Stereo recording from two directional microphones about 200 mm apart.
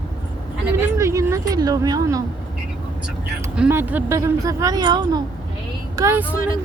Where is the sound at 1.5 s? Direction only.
20° right (ahead or behind).